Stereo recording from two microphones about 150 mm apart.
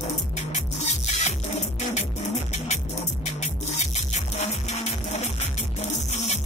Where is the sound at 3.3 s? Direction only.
50° left (ahead or behind).